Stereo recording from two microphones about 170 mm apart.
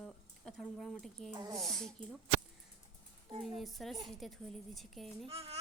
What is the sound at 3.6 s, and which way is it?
A woman's voice, centre (ahead or behind).